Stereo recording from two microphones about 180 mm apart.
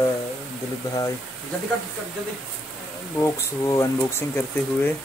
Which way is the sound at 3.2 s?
15° left (ahead or behind).